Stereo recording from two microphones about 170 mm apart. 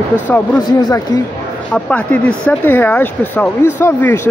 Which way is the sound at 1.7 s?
10° left (ahead or behind).